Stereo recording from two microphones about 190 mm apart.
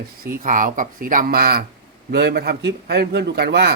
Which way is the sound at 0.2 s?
45° right (ahead or behind).